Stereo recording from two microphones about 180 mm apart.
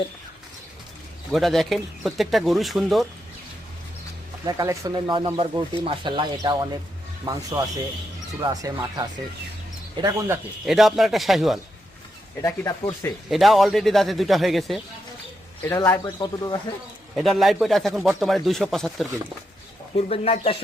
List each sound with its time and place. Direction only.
1.3 s speech: centre (ahead or behind)
4.4 s speech: 20° right (ahead or behind)
10.7 s speech: centre (ahead or behind)
12.4 s speech: 20° left (ahead or behind)
13.3 s speech: centre (ahead or behind)
15.7 s speech: 20° left (ahead or behind)
17.2 s speech: centre (ahead or behind)
20.0 s speech: 35° left (ahead or behind)